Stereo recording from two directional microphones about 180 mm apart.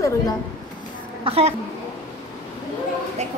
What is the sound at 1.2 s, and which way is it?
Speech, 35° right (ahead or behind).